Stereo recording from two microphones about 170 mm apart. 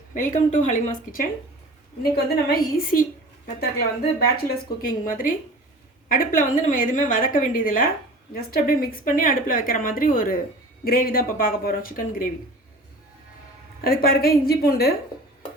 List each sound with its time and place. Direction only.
0.1 s a woman's voice: 50° left (ahead or behind)
2.1 s a woman's voice: 70° left (ahead or behind)
13.8 s a woman's voice: 60° left (ahead or behind)